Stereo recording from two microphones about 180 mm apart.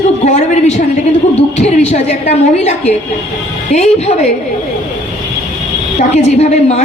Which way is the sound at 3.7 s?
40° left (ahead or behind).